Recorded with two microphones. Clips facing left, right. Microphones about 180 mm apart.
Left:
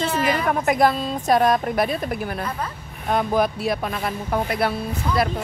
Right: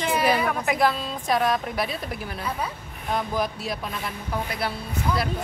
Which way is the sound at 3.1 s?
60° left (ahead or behind).